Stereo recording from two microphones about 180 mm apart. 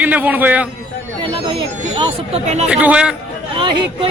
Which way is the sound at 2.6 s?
5° right (ahead or behind).